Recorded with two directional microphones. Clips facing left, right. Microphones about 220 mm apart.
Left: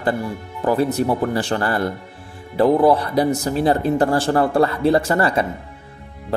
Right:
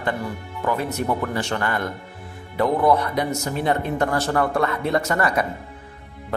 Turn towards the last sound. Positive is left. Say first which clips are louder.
# left 3 dB
turn(degrees=30)  # may be behind; listen again after turning